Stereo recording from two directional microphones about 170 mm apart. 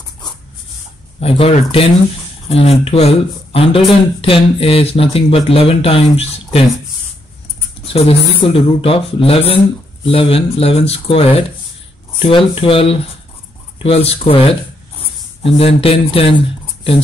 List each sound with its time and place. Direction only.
1.2 s speech: 35° left (ahead or behind)
7.8 s speech: 35° left (ahead or behind)